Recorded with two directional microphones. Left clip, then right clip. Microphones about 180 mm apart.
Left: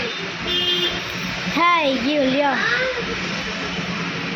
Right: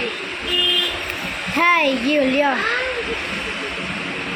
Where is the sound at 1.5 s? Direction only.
Centre (ahead or behind).